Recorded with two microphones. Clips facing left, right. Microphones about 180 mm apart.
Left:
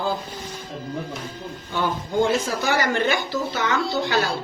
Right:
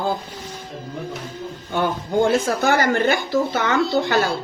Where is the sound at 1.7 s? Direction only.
55° right (ahead or behind).